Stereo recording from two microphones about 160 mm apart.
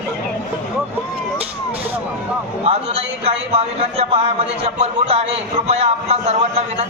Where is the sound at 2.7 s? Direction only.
40° right (ahead or behind).